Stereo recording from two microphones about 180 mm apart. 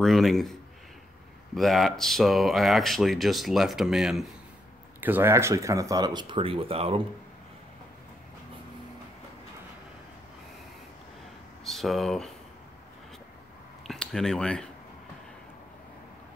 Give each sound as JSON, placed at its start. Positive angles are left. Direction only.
{"t": 0.0, "sound": "speech", "side_deg": 0}
{"t": 11.6, "sound": "speech", "side_deg": 0}
{"t": 13.8, "sound": "speech", "side_deg": 5}